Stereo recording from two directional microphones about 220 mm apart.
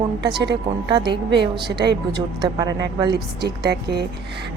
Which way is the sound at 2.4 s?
20° right (ahead or behind).